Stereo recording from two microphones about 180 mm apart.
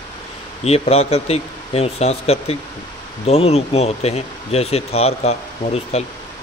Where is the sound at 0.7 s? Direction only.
35° left (ahead or behind).